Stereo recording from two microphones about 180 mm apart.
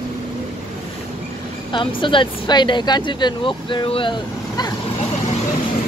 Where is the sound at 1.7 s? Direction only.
25° left (ahead or behind).